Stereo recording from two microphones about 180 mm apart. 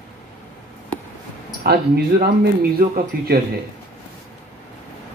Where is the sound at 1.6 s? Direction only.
60° right (ahead or behind).